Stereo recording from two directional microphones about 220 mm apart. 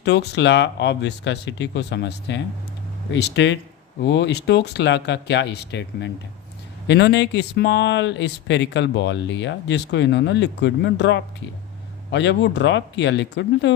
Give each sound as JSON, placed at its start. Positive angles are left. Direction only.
{"t": 0.0, "sound": "speech", "side_deg": 50}